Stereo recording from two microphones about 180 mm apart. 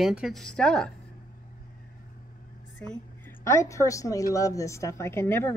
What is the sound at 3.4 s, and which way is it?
A woman's voice, 15° left (ahead or behind).